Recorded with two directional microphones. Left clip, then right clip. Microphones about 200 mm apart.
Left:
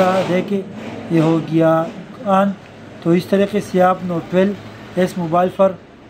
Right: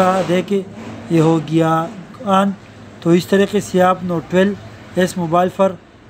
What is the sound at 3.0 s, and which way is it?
A man's voice, 40° right (ahead or behind).